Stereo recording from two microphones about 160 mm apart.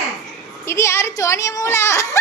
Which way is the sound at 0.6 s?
15° left (ahead or behind).